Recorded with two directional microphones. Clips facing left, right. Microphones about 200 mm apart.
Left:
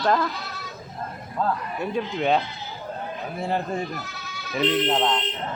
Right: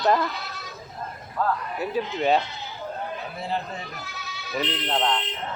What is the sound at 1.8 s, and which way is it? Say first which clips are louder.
Speech: even; 5° right (ahead or behind).